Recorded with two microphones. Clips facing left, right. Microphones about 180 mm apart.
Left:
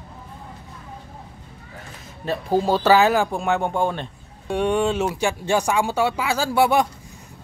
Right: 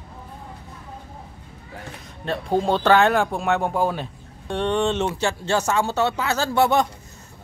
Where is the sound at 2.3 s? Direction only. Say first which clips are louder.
Left 1 dB; 5° left (ahead or behind).